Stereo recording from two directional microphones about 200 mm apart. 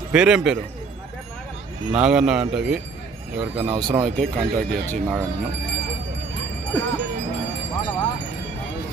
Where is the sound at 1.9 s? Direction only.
5° right (ahead or behind).